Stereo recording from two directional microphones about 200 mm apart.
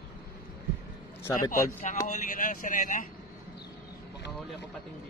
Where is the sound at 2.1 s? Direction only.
40° left (ahead or behind).